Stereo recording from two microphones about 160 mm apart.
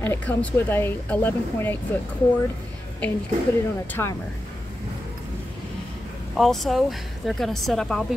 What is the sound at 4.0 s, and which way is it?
Speech, 20° left (ahead or behind).